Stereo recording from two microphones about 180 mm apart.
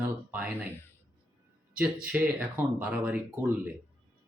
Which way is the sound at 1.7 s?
10° right (ahead or behind).